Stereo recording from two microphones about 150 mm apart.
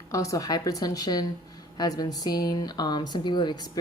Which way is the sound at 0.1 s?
20° left (ahead or behind).